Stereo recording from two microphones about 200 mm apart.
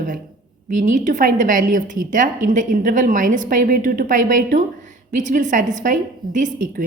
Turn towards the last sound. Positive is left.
turn(degrees=-40)  # may be behind; listen again after turning